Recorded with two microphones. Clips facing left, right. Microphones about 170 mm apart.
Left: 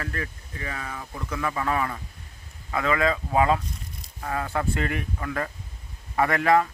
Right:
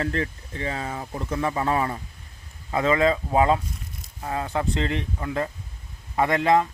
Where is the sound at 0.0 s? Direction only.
25° right (ahead or behind).